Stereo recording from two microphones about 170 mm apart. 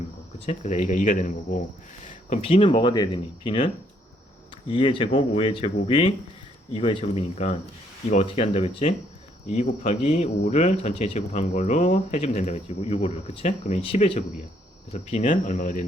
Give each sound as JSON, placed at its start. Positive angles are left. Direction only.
{"t": 0.3, "sound": "speech", "side_deg": 40}
{"t": 2.0, "sound": "speech", "side_deg": 40}
{"t": 4.7, "sound": "speech", "side_deg": 30}